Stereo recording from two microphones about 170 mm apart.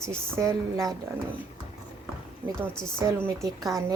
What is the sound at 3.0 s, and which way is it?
Speech, 15° right (ahead or behind).